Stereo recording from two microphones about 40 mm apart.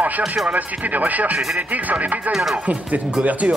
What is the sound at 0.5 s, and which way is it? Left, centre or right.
Speech, right.